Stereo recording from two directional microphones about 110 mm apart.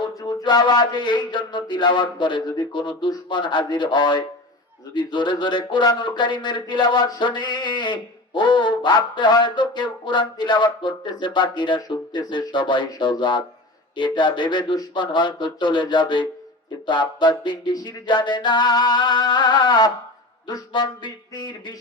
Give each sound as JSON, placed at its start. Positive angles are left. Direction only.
{"t": 0.1, "sound": "speech", "side_deg": 30}
{"t": 17.7, "sound": "music", "side_deg": 40}